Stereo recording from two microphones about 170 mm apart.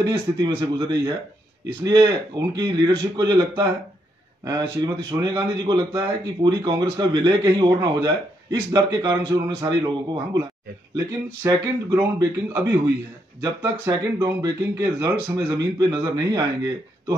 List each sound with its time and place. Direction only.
0.0 s a man's voice: 20° right (ahead or behind)